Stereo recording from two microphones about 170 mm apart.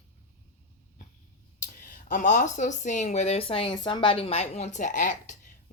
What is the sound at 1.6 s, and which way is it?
Speech, 50° left (ahead or behind).